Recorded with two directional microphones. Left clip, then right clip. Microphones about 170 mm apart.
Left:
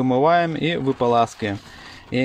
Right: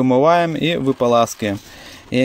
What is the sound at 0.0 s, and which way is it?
Speech, 25° right (ahead or behind).